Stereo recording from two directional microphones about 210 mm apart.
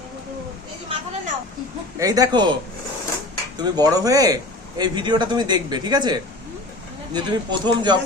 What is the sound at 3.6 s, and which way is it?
A man's voice, 20° right (ahead or behind).